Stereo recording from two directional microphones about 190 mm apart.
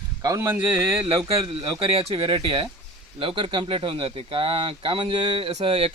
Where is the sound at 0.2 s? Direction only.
15° right (ahead or behind).